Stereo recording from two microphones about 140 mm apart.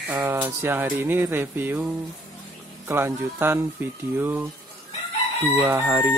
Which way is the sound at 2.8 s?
15° right (ahead or behind).